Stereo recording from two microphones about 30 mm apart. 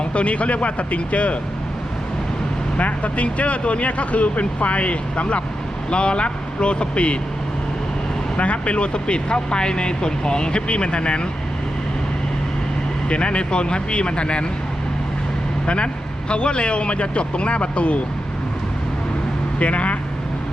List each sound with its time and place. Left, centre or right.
0.1 s speech: left
2.7 s speech: left
5.9 s speech: left
8.4 s speech: left
13.1 s speech: left
15.6 s speech: left
19.5 s speech: left